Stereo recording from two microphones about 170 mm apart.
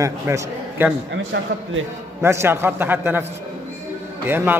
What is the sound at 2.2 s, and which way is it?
A man's voice, 15° right (ahead or behind).